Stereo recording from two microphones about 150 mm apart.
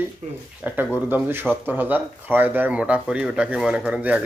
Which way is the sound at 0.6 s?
10° right (ahead or behind).